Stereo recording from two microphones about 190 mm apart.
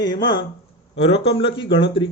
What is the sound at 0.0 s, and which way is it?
Speech, 25° left (ahead or behind).